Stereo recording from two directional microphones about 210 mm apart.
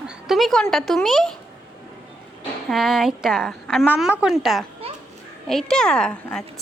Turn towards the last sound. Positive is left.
turn(degrees=5)  # may be behind; listen again after turning